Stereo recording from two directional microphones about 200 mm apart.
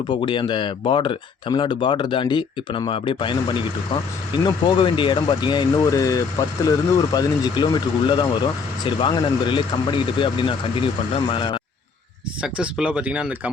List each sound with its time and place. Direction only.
0.1 s speech: 25° left (ahead or behind)
12.4 s speech: 5° right (ahead or behind)